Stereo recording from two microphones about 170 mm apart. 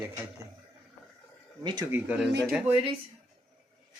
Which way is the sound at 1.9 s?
10° right (ahead or behind).